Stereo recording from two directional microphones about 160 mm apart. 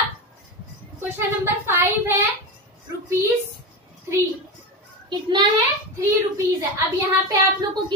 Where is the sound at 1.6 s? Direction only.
15° right (ahead or behind).